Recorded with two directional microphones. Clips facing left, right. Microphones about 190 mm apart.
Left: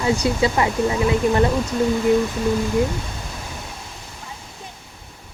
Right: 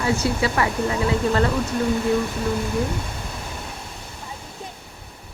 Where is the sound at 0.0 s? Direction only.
20° left (ahead or behind).